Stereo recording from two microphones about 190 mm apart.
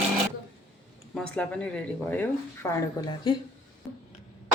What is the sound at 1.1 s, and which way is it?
Speech, 5° left (ahead or behind).